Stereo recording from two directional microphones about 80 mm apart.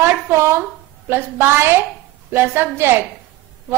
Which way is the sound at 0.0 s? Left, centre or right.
Right.